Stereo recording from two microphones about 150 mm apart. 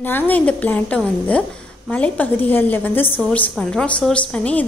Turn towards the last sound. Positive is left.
turn(degrees=10)  # may be behind; listen again after turning